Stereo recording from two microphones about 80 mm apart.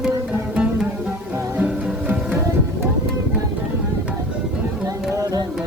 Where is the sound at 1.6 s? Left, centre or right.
Centre.